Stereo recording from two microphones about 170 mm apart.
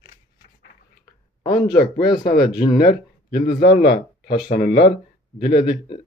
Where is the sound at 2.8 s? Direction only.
65° left (ahead or behind).